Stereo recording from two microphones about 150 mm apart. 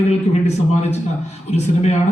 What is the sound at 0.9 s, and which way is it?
A man's voice, 50° left (ahead or behind).